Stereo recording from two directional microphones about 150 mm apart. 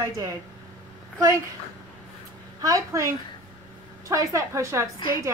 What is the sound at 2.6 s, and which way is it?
Speech, 20° right (ahead or behind).